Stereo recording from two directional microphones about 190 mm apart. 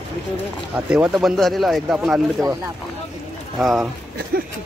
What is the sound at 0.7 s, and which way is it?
A man's voice, 5° right (ahead or behind).